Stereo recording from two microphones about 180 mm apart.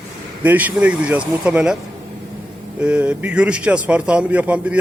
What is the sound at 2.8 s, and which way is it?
Speech, 5° right (ahead or behind).